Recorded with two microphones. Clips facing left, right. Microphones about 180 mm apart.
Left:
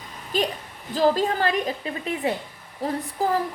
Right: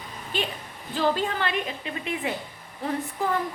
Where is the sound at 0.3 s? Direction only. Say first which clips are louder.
Left 5 dB; 40° left (ahead or behind).